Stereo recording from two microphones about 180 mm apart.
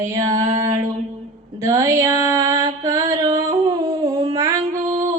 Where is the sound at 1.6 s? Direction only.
20° right (ahead or behind).